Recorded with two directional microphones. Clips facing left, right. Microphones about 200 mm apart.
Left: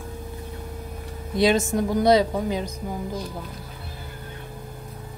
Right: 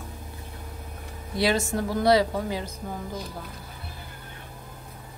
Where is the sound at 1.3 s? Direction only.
20° left (ahead or behind).